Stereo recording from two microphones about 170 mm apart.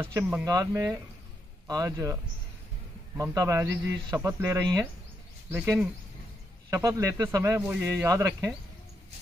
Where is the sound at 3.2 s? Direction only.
20° right (ahead or behind).